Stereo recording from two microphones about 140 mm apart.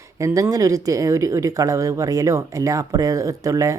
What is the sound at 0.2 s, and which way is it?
Speech, 20° right (ahead or behind).